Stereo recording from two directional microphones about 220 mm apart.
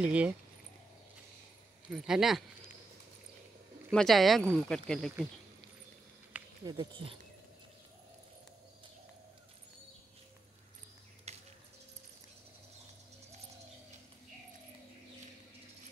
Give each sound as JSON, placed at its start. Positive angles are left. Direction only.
{"t": 0.0, "sound": "speech", "side_deg": -5}
{"t": 1.9, "sound": "speech", "side_deg": 0}
{"t": 3.9, "sound": "speech", "side_deg": 0}
{"t": 6.6, "sound": "speech", "side_deg": -20}
{"t": 11.3, "sound": "a sound", "side_deg": -30}